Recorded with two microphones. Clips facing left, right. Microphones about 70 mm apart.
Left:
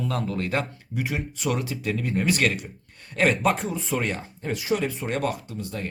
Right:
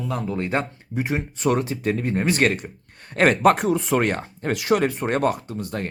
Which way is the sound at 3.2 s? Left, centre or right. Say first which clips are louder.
Right 5 dB; right.